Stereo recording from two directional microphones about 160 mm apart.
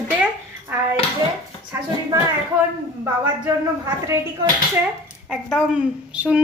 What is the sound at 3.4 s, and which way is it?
Speech, 10° right (ahead or behind).